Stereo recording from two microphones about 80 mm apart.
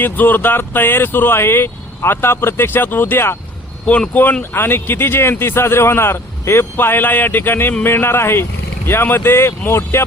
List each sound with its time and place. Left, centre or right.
0.0 s speech: left
3.8 s speech: centre; by 10.0 s left